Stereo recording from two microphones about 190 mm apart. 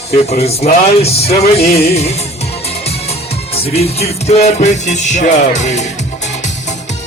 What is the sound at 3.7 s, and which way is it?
Music, 35° left (ahead or behind).